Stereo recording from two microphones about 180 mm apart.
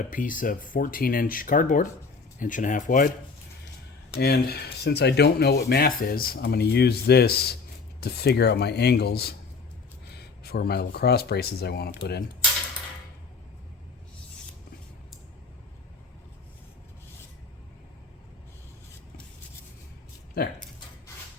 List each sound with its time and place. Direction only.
0.1 s speech: 50° left (ahead or behind)
4.2 s speech: 60° left (ahead or behind)